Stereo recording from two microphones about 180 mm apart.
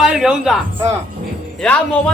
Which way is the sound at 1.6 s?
5° left (ahead or behind).